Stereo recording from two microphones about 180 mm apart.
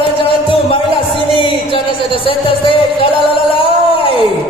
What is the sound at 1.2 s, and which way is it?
Music, 30° left (ahead or behind).